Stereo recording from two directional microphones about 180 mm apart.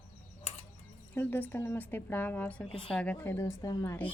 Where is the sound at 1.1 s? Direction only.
10° left (ahead or behind).